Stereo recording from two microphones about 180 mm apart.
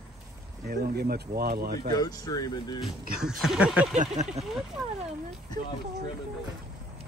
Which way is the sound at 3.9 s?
40° right (ahead or behind).